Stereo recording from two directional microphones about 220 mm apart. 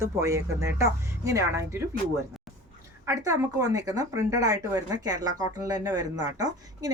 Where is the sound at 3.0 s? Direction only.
15° right (ahead or behind).